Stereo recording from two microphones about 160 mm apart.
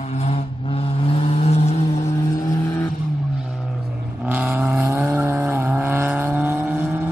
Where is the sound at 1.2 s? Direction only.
40° left (ahead or behind).